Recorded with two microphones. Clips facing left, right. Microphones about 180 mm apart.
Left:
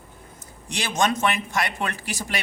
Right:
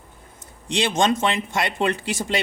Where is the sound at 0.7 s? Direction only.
25° right (ahead or behind).